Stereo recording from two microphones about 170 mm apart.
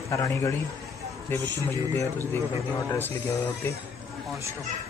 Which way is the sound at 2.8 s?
15° left (ahead or behind).